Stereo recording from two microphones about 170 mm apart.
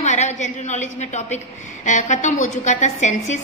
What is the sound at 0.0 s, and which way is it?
A woman's voice, 45° left (ahead or behind).